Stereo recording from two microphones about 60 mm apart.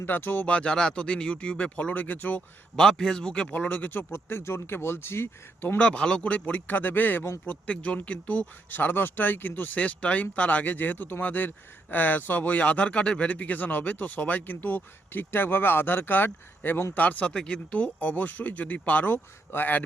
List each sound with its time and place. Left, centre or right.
0.0 s speech: left
0.4 s speech: centre
2.7 s speech: centre
3.4 s speech: left
4.1 s speech: left
5.7 s speech: left
19.1 s speech: left